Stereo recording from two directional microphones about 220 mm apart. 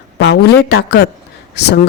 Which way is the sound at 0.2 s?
55° left (ahead or behind).